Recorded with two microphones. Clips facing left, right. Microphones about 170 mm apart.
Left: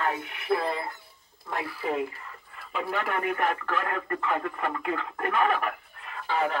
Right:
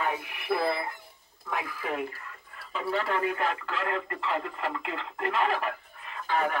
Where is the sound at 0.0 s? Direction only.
5° right (ahead or behind).